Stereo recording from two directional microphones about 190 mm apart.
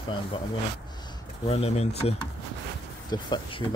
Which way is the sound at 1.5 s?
35° left (ahead or behind).